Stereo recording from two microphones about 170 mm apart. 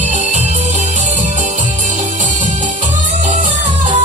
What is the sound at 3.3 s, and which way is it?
Music, 45° right (ahead or behind).